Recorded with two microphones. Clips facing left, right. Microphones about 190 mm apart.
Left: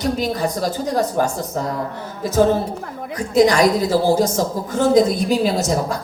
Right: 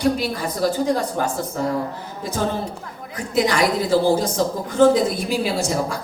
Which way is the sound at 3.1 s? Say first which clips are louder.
Left 5 dB; 40° left (ahead or behind).